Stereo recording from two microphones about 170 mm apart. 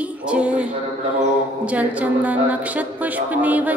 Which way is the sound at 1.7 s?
10° right (ahead or behind).